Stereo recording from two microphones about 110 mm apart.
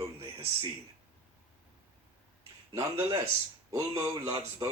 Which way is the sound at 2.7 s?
30° right (ahead or behind).